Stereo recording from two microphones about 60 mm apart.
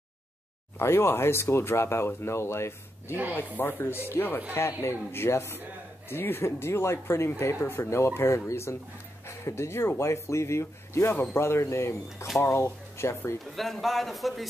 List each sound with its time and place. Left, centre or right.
0.7 s speech: left
3.3 s speech: left
13.4 s a man's voice: centre